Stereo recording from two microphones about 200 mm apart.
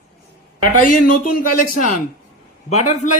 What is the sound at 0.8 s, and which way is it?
A man's voice, 45° left (ahead or behind).